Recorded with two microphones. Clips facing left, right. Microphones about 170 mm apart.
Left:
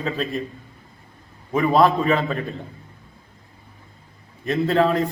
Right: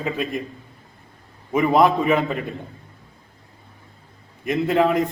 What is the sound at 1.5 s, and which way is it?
Speech, 20° right (ahead or behind).